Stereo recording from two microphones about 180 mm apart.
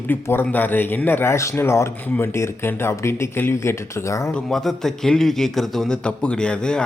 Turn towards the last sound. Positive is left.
turn(degrees=5)  # may be behind; listen again after turning